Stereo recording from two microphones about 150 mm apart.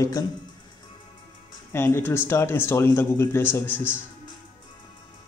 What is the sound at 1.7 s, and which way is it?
Speech, 15° left (ahead or behind).